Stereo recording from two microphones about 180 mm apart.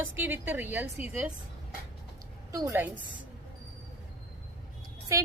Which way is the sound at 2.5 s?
15° right (ahead or behind).